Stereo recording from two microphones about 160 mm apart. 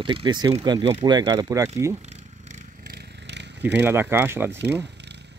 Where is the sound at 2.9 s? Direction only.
90° right.